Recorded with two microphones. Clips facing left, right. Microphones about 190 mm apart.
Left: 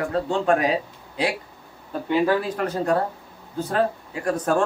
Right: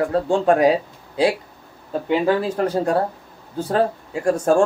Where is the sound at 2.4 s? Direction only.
30° right (ahead or behind).